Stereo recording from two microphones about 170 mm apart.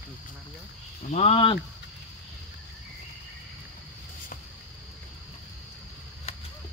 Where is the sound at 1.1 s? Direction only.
35° left (ahead or behind).